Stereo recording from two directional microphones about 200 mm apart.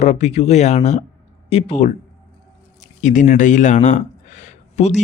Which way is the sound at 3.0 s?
40° left (ahead or behind).